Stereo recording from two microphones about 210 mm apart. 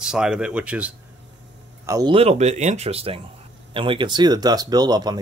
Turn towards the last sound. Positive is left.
turn(degrees=-20)  # may be behind; listen again after turning